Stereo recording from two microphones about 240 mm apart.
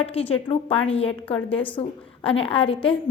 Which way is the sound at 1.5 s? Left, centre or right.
Centre.